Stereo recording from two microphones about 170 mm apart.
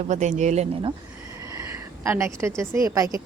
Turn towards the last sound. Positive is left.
turn(degrees=-20)  # may be behind; listen again after turning